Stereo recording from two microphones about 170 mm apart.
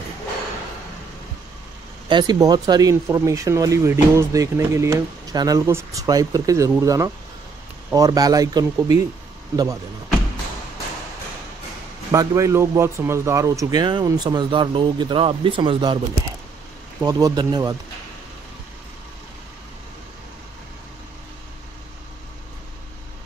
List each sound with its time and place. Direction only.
2.0 s speech: 25° right (ahead or behind)
12.1 s speech: 20° right (ahead or behind)
17.0 s speech: 20° right (ahead or behind)